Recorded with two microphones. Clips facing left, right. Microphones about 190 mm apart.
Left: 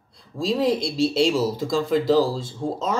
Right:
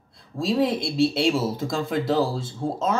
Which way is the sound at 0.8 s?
55° right (ahead or behind).